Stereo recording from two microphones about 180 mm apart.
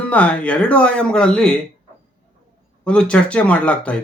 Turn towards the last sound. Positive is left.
turn(degrees=5)  # may be behind; listen again after turning